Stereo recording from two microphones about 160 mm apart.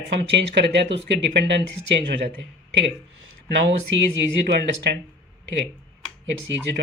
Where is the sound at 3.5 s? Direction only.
90° right.